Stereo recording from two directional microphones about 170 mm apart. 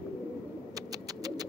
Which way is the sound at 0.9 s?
20° right (ahead or behind).